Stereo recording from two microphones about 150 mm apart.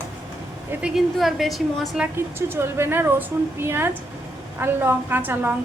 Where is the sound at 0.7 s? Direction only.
5° right (ahead or behind).